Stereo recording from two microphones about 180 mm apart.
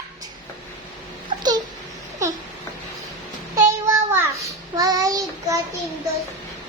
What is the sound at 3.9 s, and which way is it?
Child singing, 15° right (ahead or behind).